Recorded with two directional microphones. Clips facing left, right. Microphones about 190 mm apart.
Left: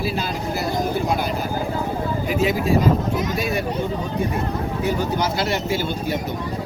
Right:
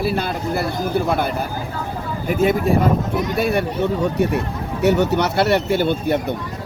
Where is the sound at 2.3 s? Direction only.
50° right (ahead or behind).